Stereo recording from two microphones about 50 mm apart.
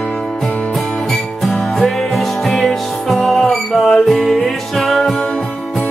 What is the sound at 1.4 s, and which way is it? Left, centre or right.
Music, centre.